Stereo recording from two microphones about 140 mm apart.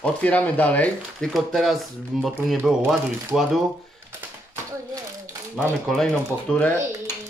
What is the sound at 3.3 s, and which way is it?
Speech, centre (ahead or behind).